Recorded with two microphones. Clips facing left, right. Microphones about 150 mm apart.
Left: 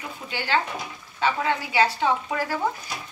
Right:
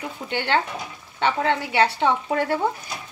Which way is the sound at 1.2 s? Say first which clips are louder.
Right 2 dB; 60° right (ahead or behind).